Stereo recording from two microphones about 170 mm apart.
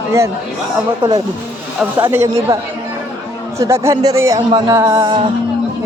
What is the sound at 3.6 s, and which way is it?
Speech, 15° right (ahead or behind).